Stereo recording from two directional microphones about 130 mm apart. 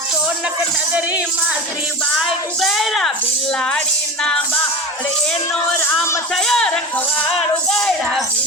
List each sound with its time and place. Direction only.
2.1 s a child's voice: centre (ahead or behind)
6.3 s a child's voice: 5° left (ahead or behind)
7.7 s a child's voice: 5° left (ahead or behind)